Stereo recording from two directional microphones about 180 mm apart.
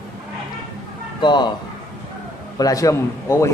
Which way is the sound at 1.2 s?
25° left (ahead or behind).